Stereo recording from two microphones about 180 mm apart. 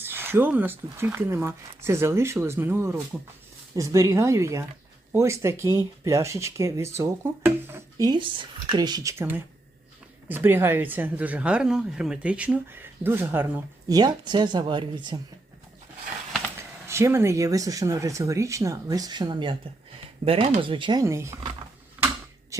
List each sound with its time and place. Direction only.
0.0 s speech: 10° right (ahead or behind)
16.8 s speech: 15° right (ahead or behind)